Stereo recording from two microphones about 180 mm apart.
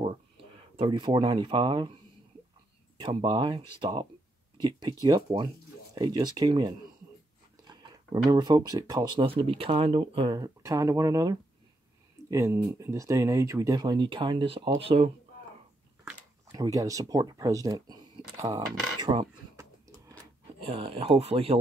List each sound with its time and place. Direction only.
0.7 s speech: 25° right (ahead or behind)
3.0 s speech: 25° right (ahead or behind)
16.5 s speech: 20° right (ahead or behind)
18.9 s dishes: 25° right (ahead or behind)
20.6 s speech: 30° right (ahead or behind)